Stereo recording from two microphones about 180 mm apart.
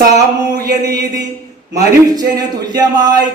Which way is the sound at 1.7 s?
20° right (ahead or behind).